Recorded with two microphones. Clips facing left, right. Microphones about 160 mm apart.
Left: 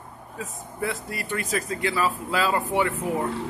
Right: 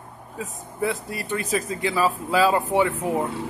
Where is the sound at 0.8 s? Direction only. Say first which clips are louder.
Right 4 dB; 20° right (ahead or behind).